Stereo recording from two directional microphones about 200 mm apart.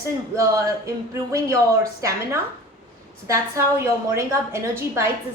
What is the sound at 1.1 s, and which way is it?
A woman's voice, 15° right (ahead or behind).